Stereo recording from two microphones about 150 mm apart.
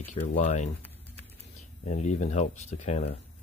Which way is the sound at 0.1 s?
50° left (ahead or behind).